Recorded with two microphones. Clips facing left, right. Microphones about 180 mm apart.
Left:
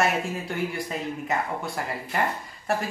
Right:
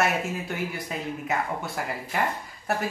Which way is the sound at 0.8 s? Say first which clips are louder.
Left 1 dB; centre (ahead or behind).